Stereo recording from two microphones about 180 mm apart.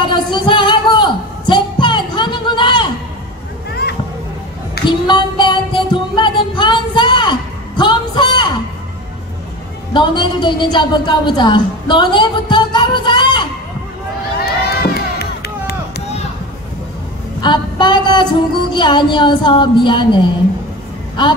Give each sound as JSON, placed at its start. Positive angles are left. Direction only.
{"t": 0.1, "sound": "singing", "side_deg": 25}
{"t": 4.8, "sound": "music", "side_deg": 25}
{"t": 9.9, "sound": "a woman's voice", "side_deg": 25}
{"t": 14.4, "sound": "run", "side_deg": 60}
{"t": 17.4, "sound": "speech", "side_deg": 25}